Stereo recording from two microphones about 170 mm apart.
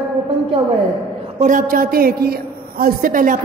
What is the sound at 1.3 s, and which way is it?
A man's voice, 50° right (ahead or behind).